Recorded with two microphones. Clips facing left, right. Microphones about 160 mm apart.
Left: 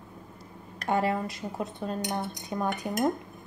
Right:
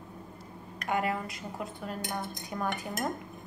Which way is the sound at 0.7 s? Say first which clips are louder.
Left 4 dB; 30° left (ahead or behind).